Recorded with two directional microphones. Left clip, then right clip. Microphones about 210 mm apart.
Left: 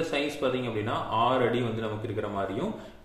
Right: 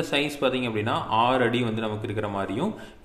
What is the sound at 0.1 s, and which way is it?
A man's voice, 40° right (ahead or behind).